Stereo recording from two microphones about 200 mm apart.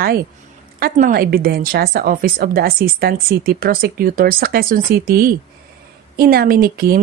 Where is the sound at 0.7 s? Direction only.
45° right (ahead or behind).